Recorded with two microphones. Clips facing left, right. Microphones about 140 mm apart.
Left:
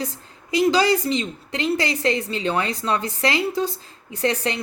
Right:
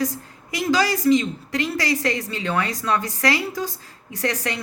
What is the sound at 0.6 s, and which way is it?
A woman's voice, 30° left (ahead or behind).